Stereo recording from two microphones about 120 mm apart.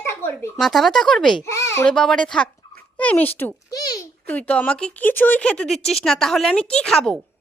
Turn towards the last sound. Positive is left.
turn(degrees=5)  # may be behind; listen again after turning